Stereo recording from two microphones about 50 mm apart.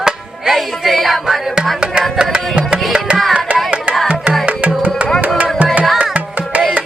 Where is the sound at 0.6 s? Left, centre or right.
Centre.